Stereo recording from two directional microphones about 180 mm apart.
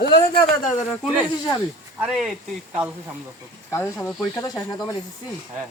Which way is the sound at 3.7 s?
15° left (ahead or behind).